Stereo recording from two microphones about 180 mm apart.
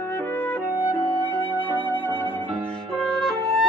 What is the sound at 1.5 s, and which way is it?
Flute, 10° left (ahead or behind).